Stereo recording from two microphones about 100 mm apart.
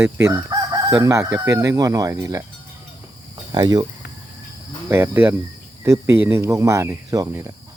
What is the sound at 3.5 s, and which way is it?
Speech, 45° right (ahead or behind).